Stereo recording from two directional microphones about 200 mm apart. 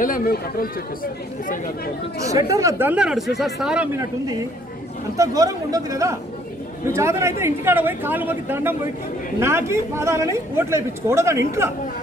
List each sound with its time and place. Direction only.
0.0 s speech: 45° left (ahead or behind)
2.5 s speech: 15° right (ahead or behind)
5.1 s a man's voice: 15° right (ahead or behind)